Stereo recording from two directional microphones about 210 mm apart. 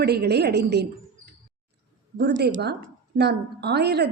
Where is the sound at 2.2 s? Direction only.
55° right (ahead or behind).